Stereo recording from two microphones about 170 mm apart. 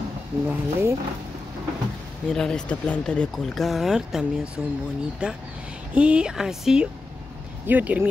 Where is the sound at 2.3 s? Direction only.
5° left (ahead or behind).